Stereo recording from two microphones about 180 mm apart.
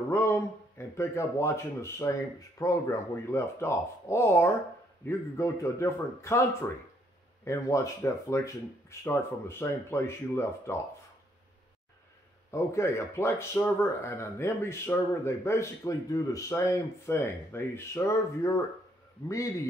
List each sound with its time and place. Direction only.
0.1 s speech: 15° left (ahead or behind)
7.4 s speech: 15° left (ahead or behind)
12.4 s speech: 15° left (ahead or behind)